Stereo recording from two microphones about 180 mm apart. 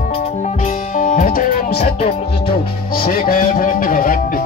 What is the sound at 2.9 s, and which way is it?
Speech, 55° left (ahead or behind).